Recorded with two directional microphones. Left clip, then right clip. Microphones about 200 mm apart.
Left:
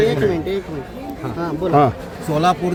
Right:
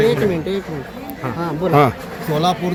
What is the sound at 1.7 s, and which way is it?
Speech, 10° right (ahead or behind).